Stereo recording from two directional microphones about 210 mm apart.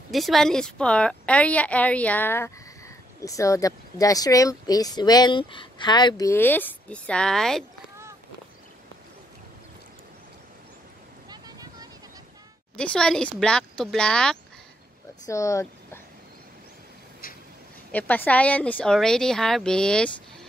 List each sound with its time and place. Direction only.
0.1 s a woman's voice: centre (ahead or behind)
11.2 s a sound: 20° right (ahead or behind)
12.7 s speech: 5° left (ahead or behind)
15.2 s speech: 15° left (ahead or behind)
17.2 s vehicle: 45° left (ahead or behind)
17.9 s speech: 10° left (ahead or behind)